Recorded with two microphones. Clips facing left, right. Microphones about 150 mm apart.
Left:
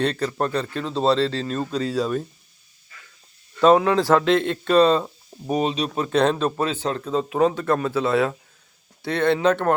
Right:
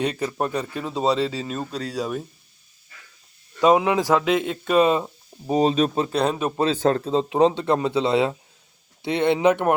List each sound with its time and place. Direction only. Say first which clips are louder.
0.0 s speech: left 1 dB; 15° right (ahead or behind)
3.6 s speech: left 2 dB; 15° right (ahead or behind)
5.5 s speech: right 3 dB; 30° right (ahead or behind)
6.1 s speech: left 3 dB; 5° right (ahead or behind)
6.7 s speech: right 6 dB; 45° right (ahead or behind)
7.0 s speech: right 2 dB; 25° right (ahead or behind)